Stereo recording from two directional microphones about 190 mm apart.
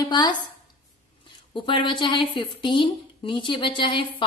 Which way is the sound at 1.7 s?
25° left (ahead or behind).